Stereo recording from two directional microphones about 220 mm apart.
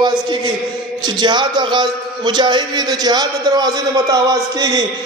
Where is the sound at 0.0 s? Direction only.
20° right (ahead or behind).